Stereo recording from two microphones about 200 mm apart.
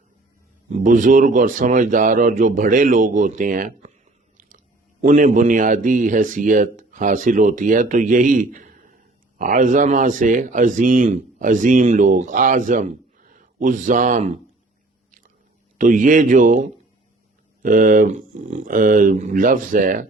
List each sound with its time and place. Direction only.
0.7 s a man's voice: 40° right (ahead or behind)
15.8 s a man's voice: 40° right (ahead or behind)